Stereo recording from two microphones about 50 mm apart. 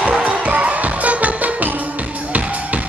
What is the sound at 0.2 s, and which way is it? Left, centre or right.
Music, right.